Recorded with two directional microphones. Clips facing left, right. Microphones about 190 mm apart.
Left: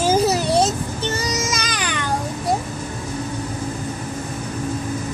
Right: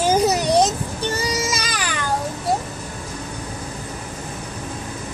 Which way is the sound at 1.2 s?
10° right (ahead or behind).